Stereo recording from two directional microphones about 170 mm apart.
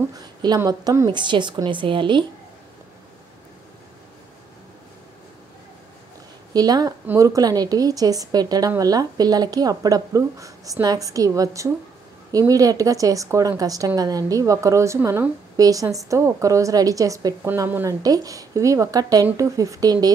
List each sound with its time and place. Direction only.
0.1 s a sound: 25° right (ahead or behind)
0.6 s a woman's voice: 20° right (ahead or behind)
6.5 s a woman's voice: 25° right (ahead or behind)